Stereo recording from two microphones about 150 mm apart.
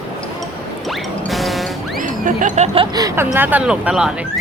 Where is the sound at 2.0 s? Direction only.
60° right (ahead or behind).